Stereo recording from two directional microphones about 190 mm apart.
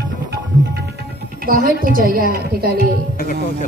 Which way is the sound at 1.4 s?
50° right (ahead or behind).